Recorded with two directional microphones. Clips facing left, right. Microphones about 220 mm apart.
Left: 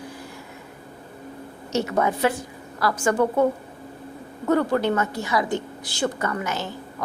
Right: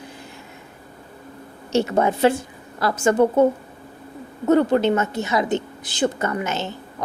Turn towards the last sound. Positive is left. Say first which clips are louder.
# right 2 dB
turn(degrees=-25)  # may be behind; listen again after turning